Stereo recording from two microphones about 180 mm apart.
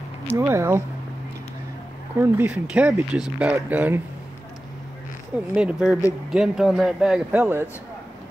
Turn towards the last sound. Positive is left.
turn(degrees=-10)  # may be behind; listen again after turning